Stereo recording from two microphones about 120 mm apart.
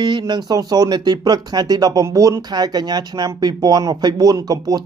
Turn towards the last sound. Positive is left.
turn(degrees=-30)  # may be behind; listen again after turning